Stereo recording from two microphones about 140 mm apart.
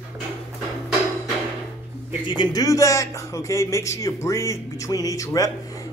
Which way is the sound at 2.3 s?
30° left (ahead or behind).